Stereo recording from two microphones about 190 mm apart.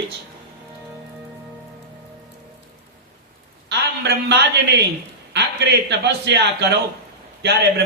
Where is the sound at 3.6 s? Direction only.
65° right (ahead or behind).